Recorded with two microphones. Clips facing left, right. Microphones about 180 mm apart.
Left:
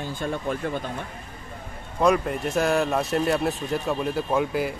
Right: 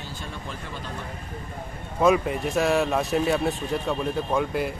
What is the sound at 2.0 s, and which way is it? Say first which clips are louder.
Speech: right 1 dB; centre (ahead or behind).